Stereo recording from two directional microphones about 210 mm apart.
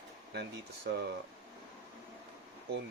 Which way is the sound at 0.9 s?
55° right (ahead or behind).